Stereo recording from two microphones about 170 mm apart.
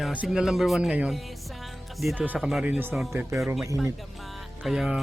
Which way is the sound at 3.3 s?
Centre (ahead or behind).